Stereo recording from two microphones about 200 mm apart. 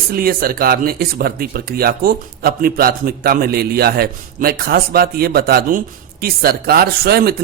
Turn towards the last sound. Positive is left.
turn(degrees=-50)  # may be behind; listen again after turning